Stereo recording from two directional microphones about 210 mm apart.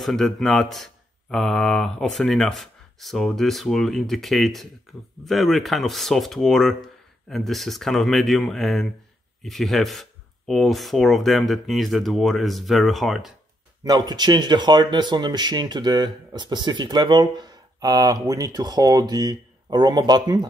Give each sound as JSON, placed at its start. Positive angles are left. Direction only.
{"t": 0.0, "sound": "speech", "side_deg": 0}
{"t": 13.8, "sound": "speech", "side_deg": -20}